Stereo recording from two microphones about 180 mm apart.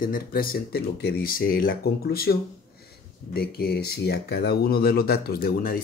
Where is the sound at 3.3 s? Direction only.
60° left (ahead or behind).